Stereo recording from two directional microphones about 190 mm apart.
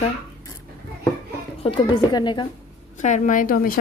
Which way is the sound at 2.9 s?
40° left (ahead or behind).